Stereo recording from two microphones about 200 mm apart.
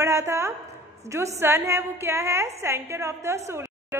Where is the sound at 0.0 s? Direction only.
15° right (ahead or behind).